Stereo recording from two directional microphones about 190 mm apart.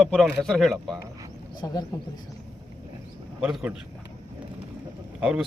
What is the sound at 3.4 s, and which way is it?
Speech, 5° right (ahead or behind).